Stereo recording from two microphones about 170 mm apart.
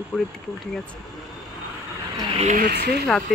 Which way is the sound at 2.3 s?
45° right (ahead or behind).